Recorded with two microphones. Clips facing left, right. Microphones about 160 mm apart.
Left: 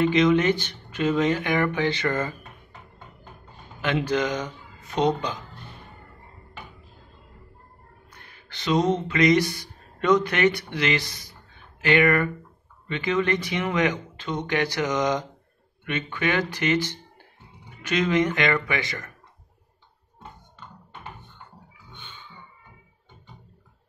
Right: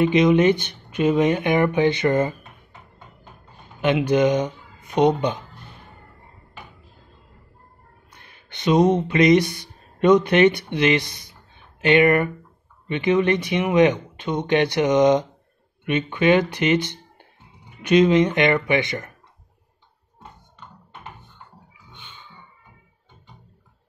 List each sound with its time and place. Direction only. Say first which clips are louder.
0.0 s speech: right 3 dB; 20° right (ahead or behind)
3.8 s speech: right 6 dB; 20° right (ahead or behind)
8.5 s speech: right 5 dB; 20° right (ahead or behind)